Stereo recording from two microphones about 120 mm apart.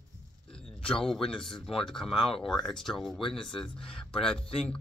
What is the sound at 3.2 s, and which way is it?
Speech, 45° left (ahead or behind).